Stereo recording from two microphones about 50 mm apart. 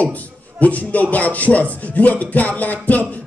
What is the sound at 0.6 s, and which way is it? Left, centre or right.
Speech, left.